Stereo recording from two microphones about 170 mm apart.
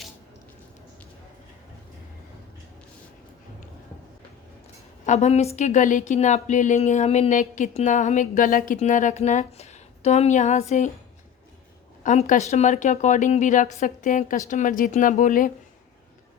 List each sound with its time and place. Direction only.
5.0 s speech: 40° left (ahead or behind)
12.0 s speech: 45° left (ahead or behind)